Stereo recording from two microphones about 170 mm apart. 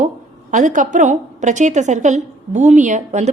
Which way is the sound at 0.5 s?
50° right (ahead or behind).